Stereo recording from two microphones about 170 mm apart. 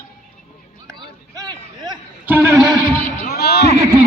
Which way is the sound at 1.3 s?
25° right (ahead or behind).